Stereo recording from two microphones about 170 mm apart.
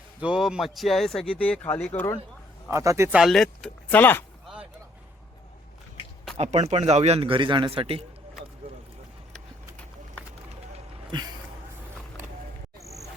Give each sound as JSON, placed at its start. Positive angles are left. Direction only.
{"t": 0.2, "sound": "a man's voice", "side_deg": -5}
{"t": 2.6, "sound": "a man's voice", "side_deg": -15}
{"t": 3.2, "sound": "a man's voice", "side_deg": 0}
{"t": 6.3, "sound": "a man's voice", "side_deg": -40}